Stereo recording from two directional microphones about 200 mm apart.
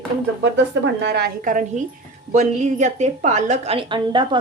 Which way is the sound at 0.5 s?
60° right (ahead or behind).